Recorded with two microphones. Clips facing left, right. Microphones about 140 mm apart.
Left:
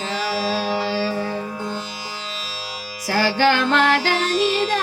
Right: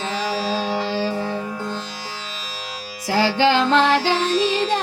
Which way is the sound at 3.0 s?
20° right (ahead or behind).